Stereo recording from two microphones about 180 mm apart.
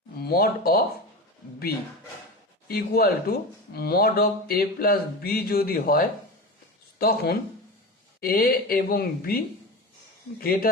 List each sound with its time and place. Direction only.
0.2 s speech: 60° left (ahead or behind)
2.6 s speech: 55° left (ahead or behind)